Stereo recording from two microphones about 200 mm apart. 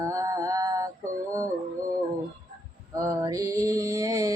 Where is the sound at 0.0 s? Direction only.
15° right (ahead or behind).